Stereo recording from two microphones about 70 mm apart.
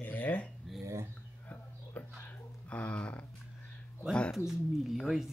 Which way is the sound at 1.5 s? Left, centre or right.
Left.